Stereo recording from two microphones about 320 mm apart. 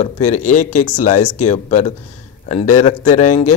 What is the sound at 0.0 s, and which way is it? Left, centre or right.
Speech, left.